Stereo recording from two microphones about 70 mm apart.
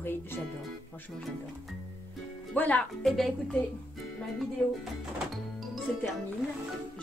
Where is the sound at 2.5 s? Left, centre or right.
Left.